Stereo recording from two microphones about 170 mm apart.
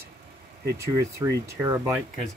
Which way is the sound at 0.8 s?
20° right (ahead or behind).